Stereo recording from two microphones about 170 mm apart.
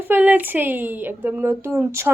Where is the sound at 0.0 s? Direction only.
10° right (ahead or behind).